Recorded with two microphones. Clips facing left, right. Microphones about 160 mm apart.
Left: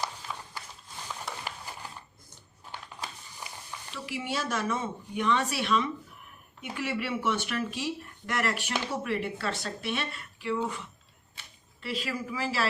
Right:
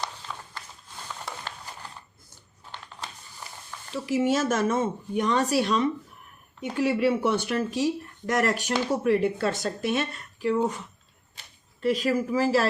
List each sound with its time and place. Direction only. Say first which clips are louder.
0.3 s walk: even; 10° left (ahead or behind)
2.7 s a sound: even; 10° left (ahead or behind)
3.9 s speech: right 10 dB; 40° right (ahead or behind)